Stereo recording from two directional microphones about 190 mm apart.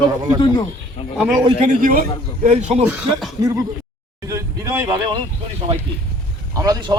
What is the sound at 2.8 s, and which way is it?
Speech, 5° right (ahead or behind).